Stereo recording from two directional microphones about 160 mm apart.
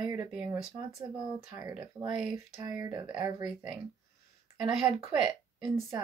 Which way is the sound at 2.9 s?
25° right (ahead or behind).